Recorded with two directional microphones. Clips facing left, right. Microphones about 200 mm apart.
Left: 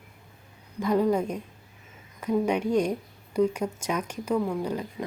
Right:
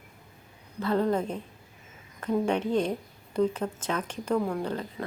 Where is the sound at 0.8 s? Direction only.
10° left (ahead or behind).